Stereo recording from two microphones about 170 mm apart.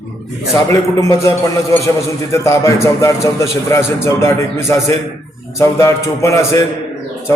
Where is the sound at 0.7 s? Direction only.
15° left (ahead or behind).